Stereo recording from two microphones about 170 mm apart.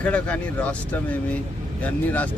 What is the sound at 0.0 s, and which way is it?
Speech, 5° left (ahead or behind).